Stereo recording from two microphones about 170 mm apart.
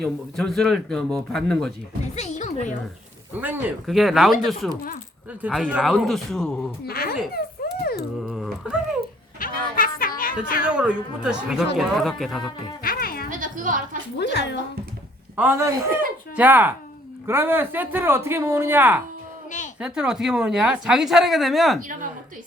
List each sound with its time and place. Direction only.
0.0 s speech: centre (ahead or behind)
2.1 s music: 45° left (ahead or behind)
3.4 s speech: centre (ahead or behind)
6.8 s speech: 65° left (ahead or behind)
7.3 s a sound: 65° left (ahead or behind)
8.3 s dog: centre (ahead or behind)
9.4 s a sound: 55° left (ahead or behind)
10.6 s speech: 5° right (ahead or behind)
12.8 s music: 60° left (ahead or behind)
13.3 s a sound: 50° right (ahead or behind)
14.2 s speech: 85° left
15.4 s speech: 15° right (ahead or behind)
19.5 s a sound: 45° left (ahead or behind)
19.8 s speech: 5° right (ahead or behind)